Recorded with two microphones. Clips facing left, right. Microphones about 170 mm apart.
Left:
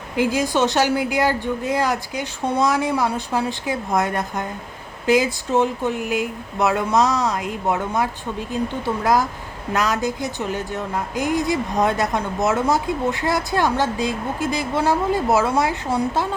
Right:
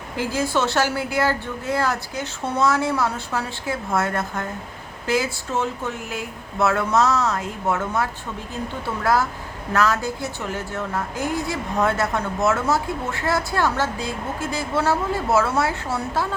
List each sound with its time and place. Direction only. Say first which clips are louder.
0.2 s a woman's voice: left 4 dB; 15° left (ahead or behind)
9.7 s a woman's voice: even; 15° left (ahead or behind)